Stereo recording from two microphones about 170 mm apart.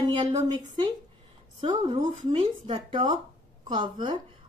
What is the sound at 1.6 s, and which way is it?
A woman's voice, 25° right (ahead or behind).